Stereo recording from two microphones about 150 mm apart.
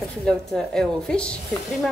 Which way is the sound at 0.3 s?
5° left (ahead or behind).